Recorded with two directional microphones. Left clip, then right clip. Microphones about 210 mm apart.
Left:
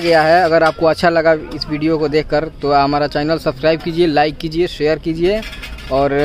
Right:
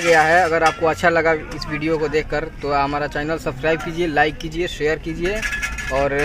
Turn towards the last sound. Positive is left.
turn(degrees=55)  # may be behind; listen again after turning